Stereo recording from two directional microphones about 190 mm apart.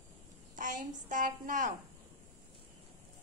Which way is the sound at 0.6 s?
40° right (ahead or behind).